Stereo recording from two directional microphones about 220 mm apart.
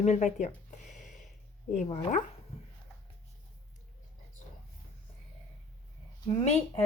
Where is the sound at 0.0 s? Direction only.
30° left (ahead or behind).